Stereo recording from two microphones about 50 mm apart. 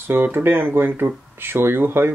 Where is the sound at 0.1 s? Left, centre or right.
Right.